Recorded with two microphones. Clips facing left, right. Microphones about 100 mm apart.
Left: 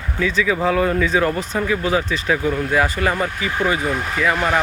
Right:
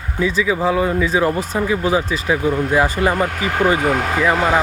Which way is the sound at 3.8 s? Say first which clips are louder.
Right 5 dB; 75° right (ahead or behind).